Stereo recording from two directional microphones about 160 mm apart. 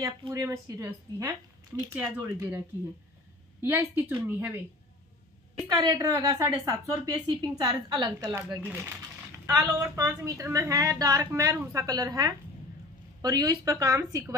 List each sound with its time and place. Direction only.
0.3 s a woman's voice: 20° right (ahead or behind)
3.6 s a woman's voice: 10° right (ahead or behind)
5.7 s a woman's voice: 20° right (ahead or behind)
8.5 s a woman's voice: 10° right (ahead or behind)